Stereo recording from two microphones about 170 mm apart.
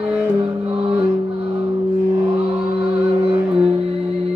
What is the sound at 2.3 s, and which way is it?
Music, 35° right (ahead or behind).